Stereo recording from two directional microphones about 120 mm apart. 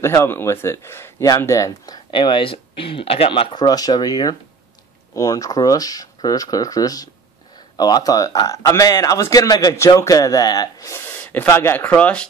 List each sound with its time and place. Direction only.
0.0 s speech: 20° left (ahead or behind)
2.0 s speech: 45° left (ahead or behind)
3.5 s speech: 35° left (ahead or behind)
11.2 s speech: 20° left (ahead or behind)